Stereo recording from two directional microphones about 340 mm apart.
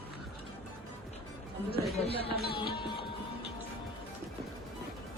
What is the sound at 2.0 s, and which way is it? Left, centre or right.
Music, centre.